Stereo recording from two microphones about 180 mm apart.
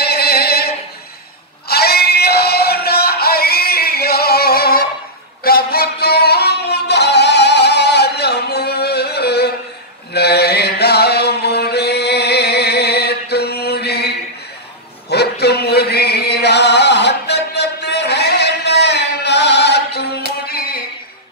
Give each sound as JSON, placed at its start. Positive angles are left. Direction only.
{"t": 0.0, "sound": "singing", "side_deg": 65}
{"t": 1.7, "sound": "music", "side_deg": 60}
{"t": 10.1, "sound": "mantra", "side_deg": 65}
{"t": 15.0, "sound": "chant", "side_deg": 65}
{"t": 20.4, "sound": "a sound", "side_deg": 55}